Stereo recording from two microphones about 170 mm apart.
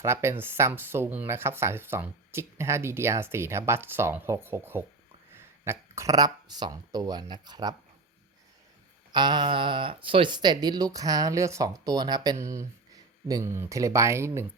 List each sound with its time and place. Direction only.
0.0 s speech: 15° right (ahead or behind)
9.1 s speech: 25° right (ahead or behind)